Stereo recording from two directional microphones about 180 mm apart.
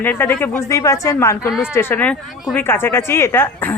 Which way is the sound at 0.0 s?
10° left (ahead or behind).